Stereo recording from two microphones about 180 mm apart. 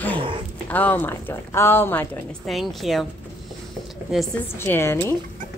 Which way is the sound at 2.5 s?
Centre (ahead or behind).